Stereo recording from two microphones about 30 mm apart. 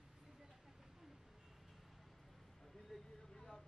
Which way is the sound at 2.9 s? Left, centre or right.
Centre.